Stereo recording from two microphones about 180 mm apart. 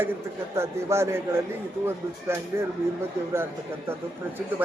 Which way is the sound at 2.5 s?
15° right (ahead or behind).